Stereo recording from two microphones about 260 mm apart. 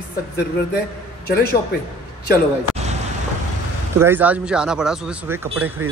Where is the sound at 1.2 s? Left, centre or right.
Left.